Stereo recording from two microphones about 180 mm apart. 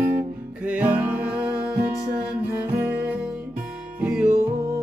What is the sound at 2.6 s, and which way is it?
Music, 10° right (ahead or behind).